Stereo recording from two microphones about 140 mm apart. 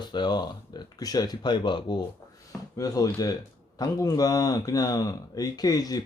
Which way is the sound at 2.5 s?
25° left (ahead or behind).